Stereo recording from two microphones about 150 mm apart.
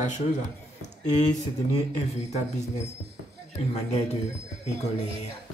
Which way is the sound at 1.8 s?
50° left (ahead or behind).